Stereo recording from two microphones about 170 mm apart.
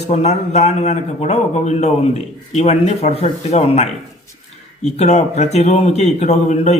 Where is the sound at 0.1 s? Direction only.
40° left (ahead or behind).